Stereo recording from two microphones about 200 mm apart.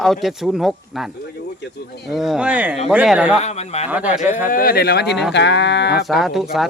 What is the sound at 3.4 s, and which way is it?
Speech, 35° left (ahead or behind).